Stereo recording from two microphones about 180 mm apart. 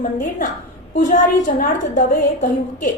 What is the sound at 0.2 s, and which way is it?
A woman's voice, 45° left (ahead or behind).